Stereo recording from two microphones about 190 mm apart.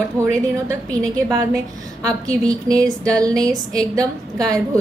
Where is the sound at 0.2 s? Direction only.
15° right (ahead or behind).